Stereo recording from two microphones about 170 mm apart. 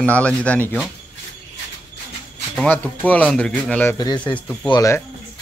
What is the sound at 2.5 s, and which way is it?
Speech, 10° left (ahead or behind).